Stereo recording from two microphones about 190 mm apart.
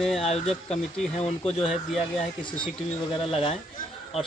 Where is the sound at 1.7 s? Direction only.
Centre (ahead or behind).